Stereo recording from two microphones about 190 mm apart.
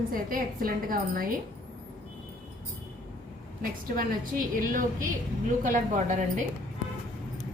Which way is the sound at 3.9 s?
45° right (ahead or behind).